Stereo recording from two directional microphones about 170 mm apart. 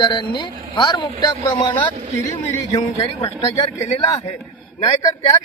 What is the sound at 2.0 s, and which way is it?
Speech, 40° right (ahead or behind).